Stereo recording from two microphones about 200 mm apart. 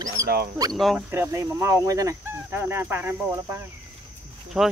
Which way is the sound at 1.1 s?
15° right (ahead or behind).